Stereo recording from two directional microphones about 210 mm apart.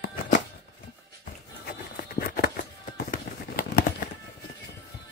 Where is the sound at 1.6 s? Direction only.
45° left (ahead or behind).